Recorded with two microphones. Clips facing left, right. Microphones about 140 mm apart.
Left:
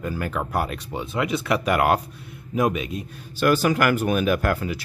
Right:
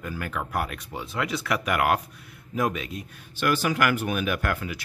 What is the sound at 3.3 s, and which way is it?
Speech, 40° left (ahead or behind).